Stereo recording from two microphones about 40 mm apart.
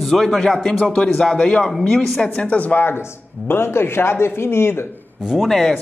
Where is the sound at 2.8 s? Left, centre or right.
Left.